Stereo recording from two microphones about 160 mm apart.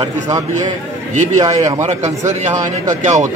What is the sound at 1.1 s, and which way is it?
Speech, 50° right (ahead or behind).